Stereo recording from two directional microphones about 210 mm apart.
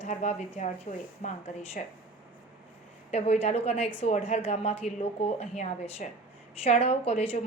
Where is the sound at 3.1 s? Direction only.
30° left (ahead or behind).